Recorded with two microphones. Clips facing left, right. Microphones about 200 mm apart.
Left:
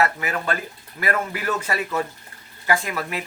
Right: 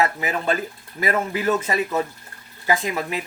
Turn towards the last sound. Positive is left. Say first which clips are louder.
# right 2 dB
turn(degrees=-20)  # may be behind; listen again after turning